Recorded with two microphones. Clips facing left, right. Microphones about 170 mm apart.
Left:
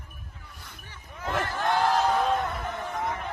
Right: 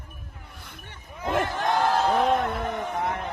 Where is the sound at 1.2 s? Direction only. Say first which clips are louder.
Right 3 dB; 20° right (ahead or behind).